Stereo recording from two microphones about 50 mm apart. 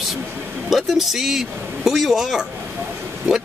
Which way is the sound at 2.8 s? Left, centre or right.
Right.